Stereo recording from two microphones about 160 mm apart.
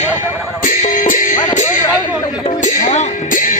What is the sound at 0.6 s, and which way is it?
Music, 55° left (ahead or behind).